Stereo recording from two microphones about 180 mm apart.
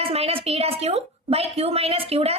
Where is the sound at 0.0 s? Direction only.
35° right (ahead or behind).